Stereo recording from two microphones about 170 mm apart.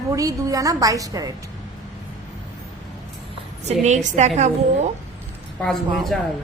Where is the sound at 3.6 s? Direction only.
45° right (ahead or behind).